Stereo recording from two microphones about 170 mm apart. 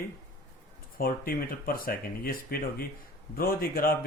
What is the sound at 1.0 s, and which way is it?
Speech, 60° left (ahead or behind).